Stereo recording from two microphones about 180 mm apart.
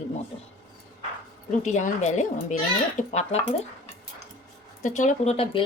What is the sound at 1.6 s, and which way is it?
Speech, 40° left (ahead or behind).